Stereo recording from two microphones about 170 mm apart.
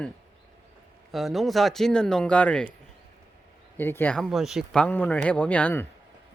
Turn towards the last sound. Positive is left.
turn(degrees=10)  # may be behind; listen again after turning